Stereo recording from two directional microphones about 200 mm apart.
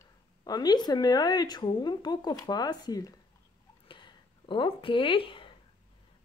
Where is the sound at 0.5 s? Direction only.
20° left (ahead or behind).